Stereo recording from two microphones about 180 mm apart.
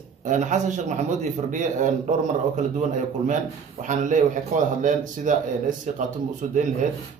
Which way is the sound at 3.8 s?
45° right (ahead or behind).